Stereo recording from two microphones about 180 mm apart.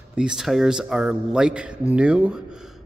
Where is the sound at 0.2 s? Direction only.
5° right (ahead or behind).